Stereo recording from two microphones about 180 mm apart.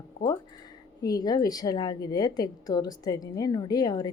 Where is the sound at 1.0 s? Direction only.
20° left (ahead or behind).